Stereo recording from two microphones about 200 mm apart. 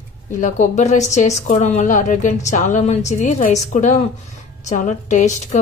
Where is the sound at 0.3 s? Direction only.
40° left (ahead or behind).